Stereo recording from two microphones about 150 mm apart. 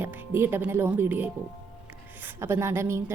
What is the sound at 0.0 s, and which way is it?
A woman's voice, 15° right (ahead or behind).